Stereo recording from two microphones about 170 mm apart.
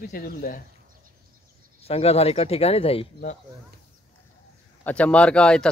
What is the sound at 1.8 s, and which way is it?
Speech, 35° left (ahead or behind).